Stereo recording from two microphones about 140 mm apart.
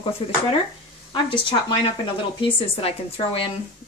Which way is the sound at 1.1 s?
35° left (ahead or behind).